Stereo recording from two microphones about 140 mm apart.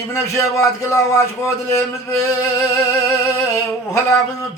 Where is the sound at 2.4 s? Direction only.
20° left (ahead or behind).